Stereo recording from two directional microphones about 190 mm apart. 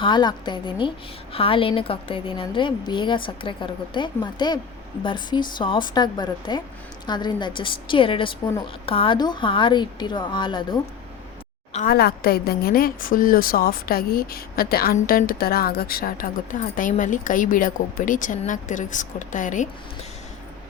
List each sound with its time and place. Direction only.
0.0 s a woman's voice: 25° left (ahead or behind)
11.9 s a woman's voice: 55° left (ahead or behind)